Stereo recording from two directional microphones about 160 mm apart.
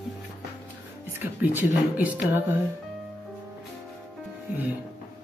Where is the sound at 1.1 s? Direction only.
10° right (ahead or behind).